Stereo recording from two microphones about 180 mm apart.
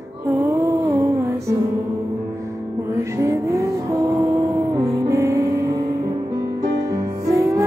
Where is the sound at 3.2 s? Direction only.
15° right (ahead or behind).